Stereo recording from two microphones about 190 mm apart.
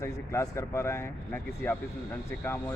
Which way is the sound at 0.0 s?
15° left (ahead or behind).